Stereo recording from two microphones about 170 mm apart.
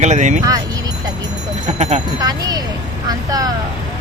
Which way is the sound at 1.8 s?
45° right (ahead or behind).